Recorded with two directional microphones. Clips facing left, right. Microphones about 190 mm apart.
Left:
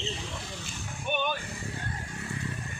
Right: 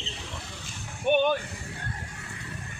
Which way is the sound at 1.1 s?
60° right (ahead or behind).